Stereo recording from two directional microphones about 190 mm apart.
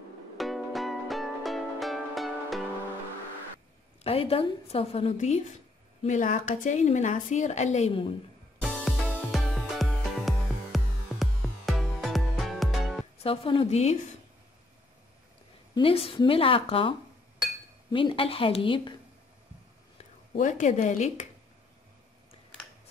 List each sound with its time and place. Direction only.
0.4 s music: centre (ahead or behind)
4.0 s a woman's voice: 30° left (ahead or behind)
8.5 s music: centre (ahead or behind)
13.2 s a woman's voice: 30° left (ahead or behind)
15.7 s a woman's voice: 30° left (ahead or behind)
17.9 s a woman's voice: 30° left (ahead or behind)
20.0 s speech: 40° left (ahead or behind)